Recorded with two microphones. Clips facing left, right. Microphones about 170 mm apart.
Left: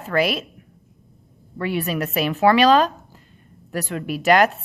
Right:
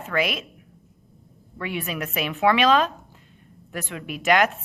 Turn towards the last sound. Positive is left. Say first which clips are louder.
# left 4 dB
turn(degrees=35)  # may be behind; listen again after turning